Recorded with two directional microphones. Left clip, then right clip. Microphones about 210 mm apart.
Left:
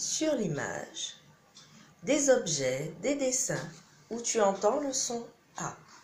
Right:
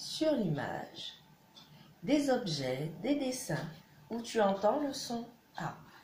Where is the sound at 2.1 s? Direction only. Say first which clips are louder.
Left 5 dB; 30° left (ahead or behind).